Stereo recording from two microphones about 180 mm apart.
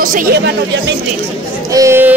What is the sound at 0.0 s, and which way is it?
Speech, 50° right (ahead or behind).